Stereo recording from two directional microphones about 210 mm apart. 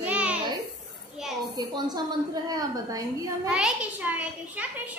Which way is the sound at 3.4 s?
5° right (ahead or behind).